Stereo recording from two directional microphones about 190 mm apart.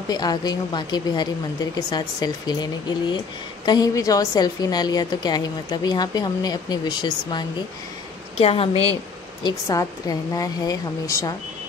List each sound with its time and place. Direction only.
0.1 s a woman's voice: 20° left (ahead or behind)
9.4 s a woman's voice: 20° left (ahead or behind)